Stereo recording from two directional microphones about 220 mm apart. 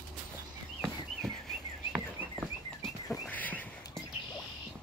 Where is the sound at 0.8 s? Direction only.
Centre (ahead or behind).